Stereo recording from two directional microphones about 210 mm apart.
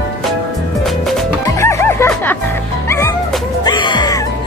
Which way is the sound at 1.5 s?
15° left (ahead or behind).